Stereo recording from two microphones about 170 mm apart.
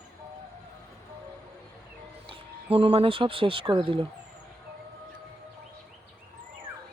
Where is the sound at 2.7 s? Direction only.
35° right (ahead or behind).